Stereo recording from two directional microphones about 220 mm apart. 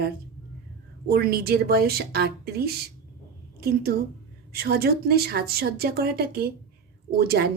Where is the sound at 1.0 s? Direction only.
45° right (ahead or behind).